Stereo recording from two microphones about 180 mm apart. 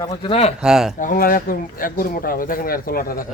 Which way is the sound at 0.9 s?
50° left (ahead or behind).